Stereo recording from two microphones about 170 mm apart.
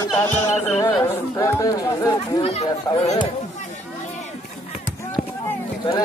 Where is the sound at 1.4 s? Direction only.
20° left (ahead or behind).